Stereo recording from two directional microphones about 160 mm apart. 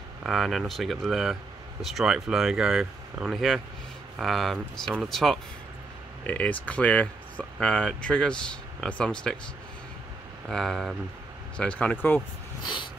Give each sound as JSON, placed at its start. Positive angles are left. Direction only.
{"t": 0.2, "sound": "speech", "side_deg": 0}
{"t": 10.5, "sound": "speech", "side_deg": 0}
{"t": 12.6, "sound": "a sound", "side_deg": 30}